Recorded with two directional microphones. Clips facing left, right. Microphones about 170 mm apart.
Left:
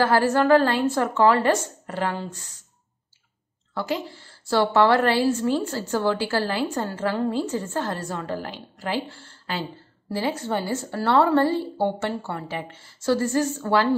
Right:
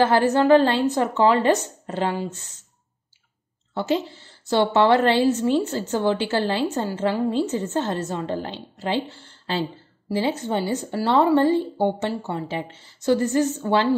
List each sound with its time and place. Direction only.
0.0 s a woman's voice: 20° right (ahead or behind)
3.7 s a woman's voice: 25° right (ahead or behind)